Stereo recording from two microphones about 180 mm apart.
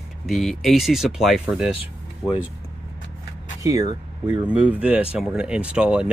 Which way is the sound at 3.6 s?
20° right (ahead or behind).